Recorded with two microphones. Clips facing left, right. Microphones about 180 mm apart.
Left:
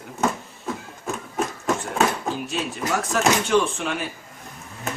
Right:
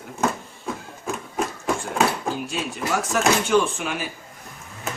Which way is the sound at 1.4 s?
Centre (ahead or behind).